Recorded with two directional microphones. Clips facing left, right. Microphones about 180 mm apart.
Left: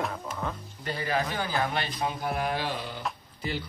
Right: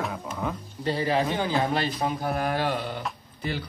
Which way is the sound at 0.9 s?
30° right (ahead or behind).